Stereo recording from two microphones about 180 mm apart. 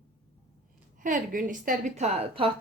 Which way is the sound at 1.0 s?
50° right (ahead or behind).